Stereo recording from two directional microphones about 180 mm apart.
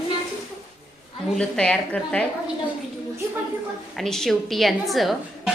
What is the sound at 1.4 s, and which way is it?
Speech, 5° left (ahead or behind).